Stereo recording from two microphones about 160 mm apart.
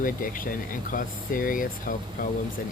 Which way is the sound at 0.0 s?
60° left (ahead or behind).